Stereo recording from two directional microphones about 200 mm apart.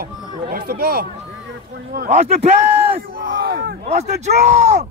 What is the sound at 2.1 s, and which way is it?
Speech, 35° right (ahead or behind).